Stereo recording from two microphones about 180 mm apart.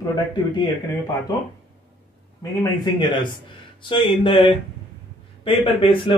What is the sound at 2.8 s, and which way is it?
A man's voice, 25° left (ahead or behind).